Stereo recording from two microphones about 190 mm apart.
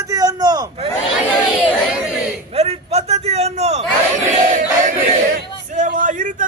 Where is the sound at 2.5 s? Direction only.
35° right (ahead or behind).